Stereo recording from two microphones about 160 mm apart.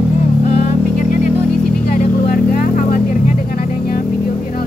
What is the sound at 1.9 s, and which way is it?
Vehicle, 65° left (ahead or behind).